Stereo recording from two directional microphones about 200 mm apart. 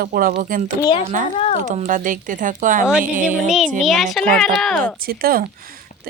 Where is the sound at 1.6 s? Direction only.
35° right (ahead or behind).